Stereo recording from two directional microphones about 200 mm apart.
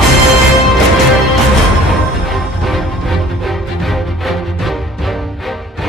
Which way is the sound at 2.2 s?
Centre (ahead or behind).